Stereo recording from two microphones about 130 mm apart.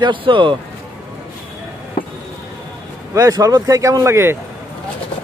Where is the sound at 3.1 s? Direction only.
25° right (ahead or behind).